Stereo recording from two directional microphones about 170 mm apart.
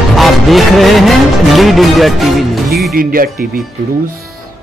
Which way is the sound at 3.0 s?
55° right (ahead or behind).